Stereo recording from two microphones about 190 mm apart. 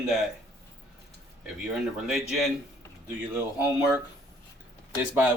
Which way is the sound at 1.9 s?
Centre (ahead or behind).